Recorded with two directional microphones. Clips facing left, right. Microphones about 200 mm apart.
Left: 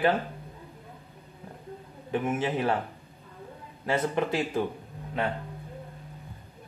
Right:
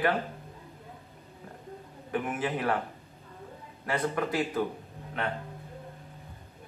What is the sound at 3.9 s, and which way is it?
Speech, 25° left (ahead or behind).